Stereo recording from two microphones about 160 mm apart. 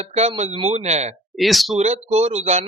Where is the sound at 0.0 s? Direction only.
45° right (ahead or behind).